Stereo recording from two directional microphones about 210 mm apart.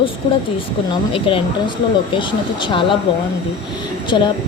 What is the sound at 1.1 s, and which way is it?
A woman's voice, 25° left (ahead or behind).